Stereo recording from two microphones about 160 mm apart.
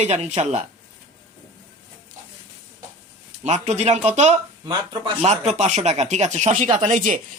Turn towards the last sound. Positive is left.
turn(degrees=-55)  # may be behind; listen again after turning